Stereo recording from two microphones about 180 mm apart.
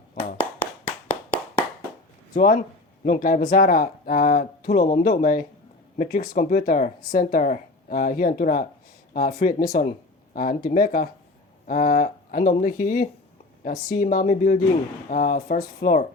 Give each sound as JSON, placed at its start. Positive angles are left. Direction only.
{"t": 2.3, "sound": "speech", "side_deg": 50}